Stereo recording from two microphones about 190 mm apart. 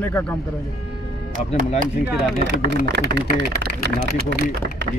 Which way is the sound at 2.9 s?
60° right (ahead or behind).